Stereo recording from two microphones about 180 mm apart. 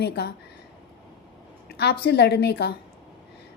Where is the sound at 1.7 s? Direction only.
65° left (ahead or behind).